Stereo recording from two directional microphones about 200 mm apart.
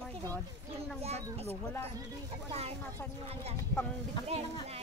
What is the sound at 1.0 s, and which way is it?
A child's voice, 30° right (ahead or behind).